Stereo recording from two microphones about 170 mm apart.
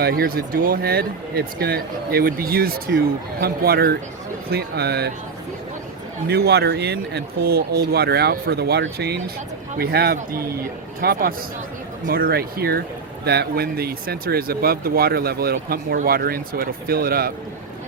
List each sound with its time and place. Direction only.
0.0 s speech: 65° right (ahead or behind)
6.2 s speech: 70° right (ahead or behind)